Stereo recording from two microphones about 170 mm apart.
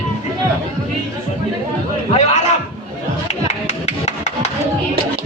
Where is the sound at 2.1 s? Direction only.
40° left (ahead or behind).